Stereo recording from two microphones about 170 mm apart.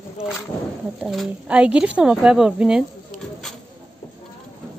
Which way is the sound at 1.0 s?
Centre (ahead or behind).